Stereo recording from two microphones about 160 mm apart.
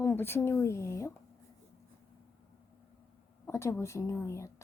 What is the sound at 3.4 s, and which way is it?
Speech, 15° left (ahead or behind).